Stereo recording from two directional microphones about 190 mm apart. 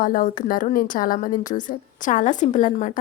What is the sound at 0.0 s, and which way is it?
A woman's voice, 45° left (ahead or behind).